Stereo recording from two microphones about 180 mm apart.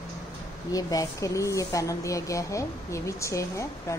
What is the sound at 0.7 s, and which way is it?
Speech, 20° left (ahead or behind).